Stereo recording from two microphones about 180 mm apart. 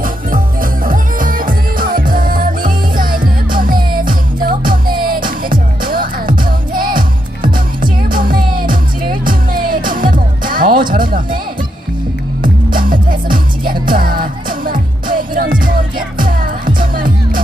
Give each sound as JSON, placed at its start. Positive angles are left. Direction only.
{"t": 0.0, "sound": "music", "side_deg": -50}
{"t": 12.4, "sound": "music", "side_deg": -50}